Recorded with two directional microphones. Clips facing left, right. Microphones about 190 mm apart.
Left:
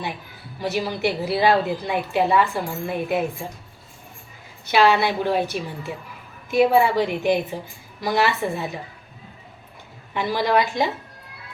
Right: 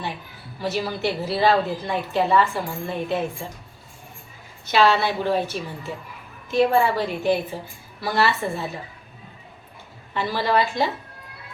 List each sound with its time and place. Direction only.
0.6 s a woman's voice: 15° left (ahead or behind)
4.6 s a woman's voice: 15° left (ahead or behind)
10.2 s a woman's voice: 15° left (ahead or behind)